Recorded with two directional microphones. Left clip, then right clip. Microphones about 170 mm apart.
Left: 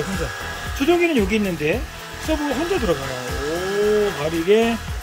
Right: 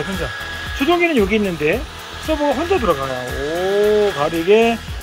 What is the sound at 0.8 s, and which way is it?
Speech, 5° left (ahead or behind).